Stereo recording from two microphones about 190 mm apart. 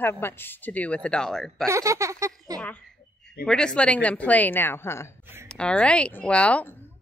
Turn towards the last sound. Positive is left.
turn(degrees=5)  # may be behind; listen again after turning